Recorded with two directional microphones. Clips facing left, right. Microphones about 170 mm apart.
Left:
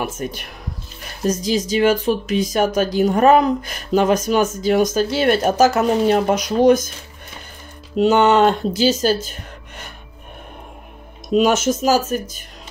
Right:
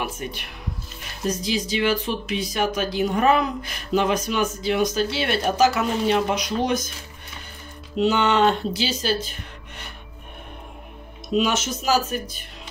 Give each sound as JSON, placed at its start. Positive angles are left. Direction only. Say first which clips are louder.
{"t": 0.0, "sound": "speech", "louder": "left 4 dB", "side_deg": 45}
{"t": 8.0, "sound": "speech", "louder": "left 5 dB", "side_deg": 45}
{"t": 11.3, "sound": "speech", "louder": "left 7 dB", "side_deg": 45}